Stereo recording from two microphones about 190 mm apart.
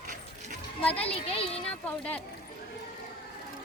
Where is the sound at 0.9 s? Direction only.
30° left (ahead or behind).